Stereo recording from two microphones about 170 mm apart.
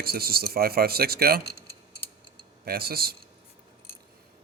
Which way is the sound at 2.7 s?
65° right (ahead or behind).